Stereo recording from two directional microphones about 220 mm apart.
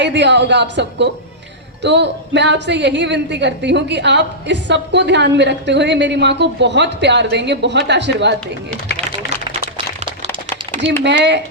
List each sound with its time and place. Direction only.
0.0 s a woman's voice: 50° right (ahead or behind)
9.5 s a sound: 20° right (ahead or behind)
11.0 s a woman's voice: 50° right (ahead or behind)